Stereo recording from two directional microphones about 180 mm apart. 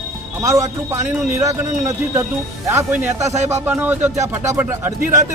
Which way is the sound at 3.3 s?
40° right (ahead or behind).